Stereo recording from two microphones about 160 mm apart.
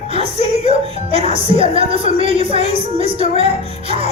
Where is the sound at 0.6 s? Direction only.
35° right (ahead or behind).